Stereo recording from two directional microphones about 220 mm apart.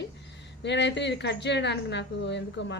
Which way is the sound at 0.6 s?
55° left (ahead or behind).